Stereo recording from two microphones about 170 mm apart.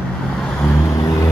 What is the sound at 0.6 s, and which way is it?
Vehicle, 20° left (ahead or behind).